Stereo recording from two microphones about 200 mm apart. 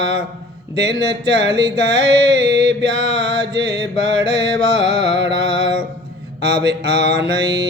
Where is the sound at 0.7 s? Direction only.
60° right (ahead or behind).